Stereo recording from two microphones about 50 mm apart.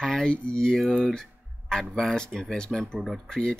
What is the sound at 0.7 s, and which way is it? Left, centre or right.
Speech, centre.